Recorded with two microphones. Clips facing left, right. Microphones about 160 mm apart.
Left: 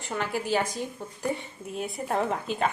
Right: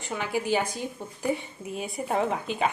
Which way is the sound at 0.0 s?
Centre (ahead or behind).